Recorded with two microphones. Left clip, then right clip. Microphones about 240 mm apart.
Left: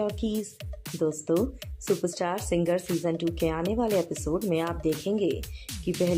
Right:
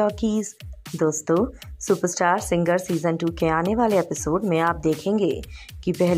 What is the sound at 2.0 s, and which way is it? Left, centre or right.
Speech, centre.